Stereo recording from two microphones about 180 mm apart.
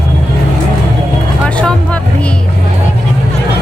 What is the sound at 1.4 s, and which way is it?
Music, 5° left (ahead or behind).